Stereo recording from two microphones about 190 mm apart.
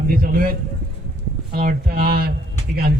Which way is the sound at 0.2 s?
50° right (ahead or behind).